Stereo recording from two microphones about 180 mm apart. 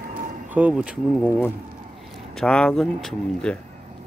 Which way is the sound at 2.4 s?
5° left (ahead or behind).